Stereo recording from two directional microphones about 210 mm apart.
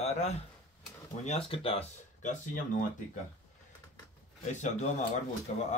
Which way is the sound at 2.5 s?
40° left (ahead or behind).